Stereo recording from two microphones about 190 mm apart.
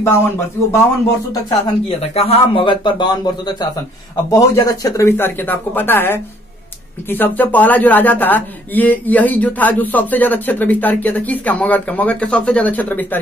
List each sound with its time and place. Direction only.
0.0 s a man's voice: 10° left (ahead or behind)
1.9 s a man's voice: 30° left (ahead or behind); by 13.2 s 10° left (ahead or behind)